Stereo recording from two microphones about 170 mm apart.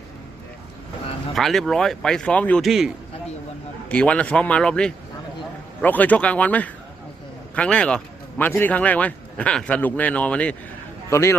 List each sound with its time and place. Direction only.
1.4 s a man's voice: centre (ahead or behind)